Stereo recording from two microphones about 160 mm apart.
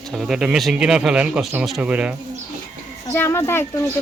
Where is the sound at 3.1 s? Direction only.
15° left (ahead or behind).